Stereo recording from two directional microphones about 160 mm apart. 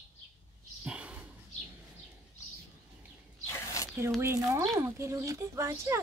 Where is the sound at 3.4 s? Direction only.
15° left (ahead or behind).